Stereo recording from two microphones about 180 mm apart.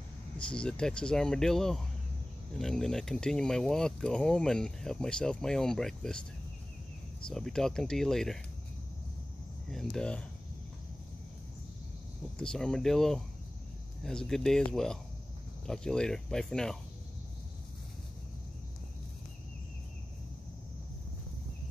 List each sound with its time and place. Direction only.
0.5 s speech: 5° left (ahead or behind)
7.2 s speech: 5° left (ahead or behind)
9.7 s speech: 5° left (ahead or behind)
12.4 s speech: 5° left (ahead or behind)